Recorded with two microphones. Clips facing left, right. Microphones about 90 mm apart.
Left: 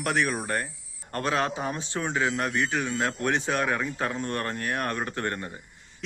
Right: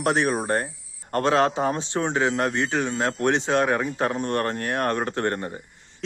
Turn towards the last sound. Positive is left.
turn(degrees=-35)  # may be behind; listen again after turning